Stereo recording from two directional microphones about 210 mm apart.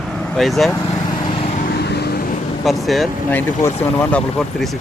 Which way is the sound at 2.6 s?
Centre (ahead or behind).